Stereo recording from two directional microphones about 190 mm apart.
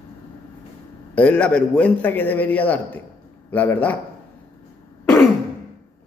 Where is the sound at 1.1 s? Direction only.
5° left (ahead or behind).